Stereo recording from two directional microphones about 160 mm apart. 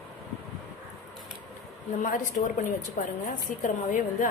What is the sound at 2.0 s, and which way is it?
A woman's voice, 55° left (ahead or behind).